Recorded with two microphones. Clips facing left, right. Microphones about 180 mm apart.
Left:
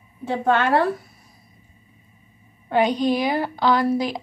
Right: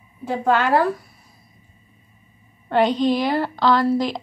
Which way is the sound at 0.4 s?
30° left (ahead or behind).